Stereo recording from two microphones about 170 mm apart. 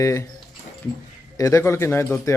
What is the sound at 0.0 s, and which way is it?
Speech, 20° left (ahead or behind).